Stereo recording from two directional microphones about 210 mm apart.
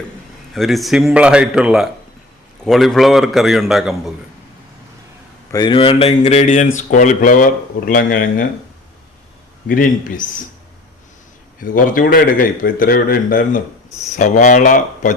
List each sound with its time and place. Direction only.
0.5 s a man's voice: centre (ahead or behind)
5.5 s a man's voice: 20° left (ahead or behind); by 8.4 s 45° left (ahead or behind)
9.6 s a man's voice: 40° left (ahead or behind)
11.6 s a man's voice: 40° left (ahead or behind)